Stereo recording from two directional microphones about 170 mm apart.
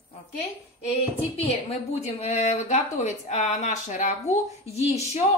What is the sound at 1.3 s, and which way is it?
A woman's voice, 35° left (ahead or behind).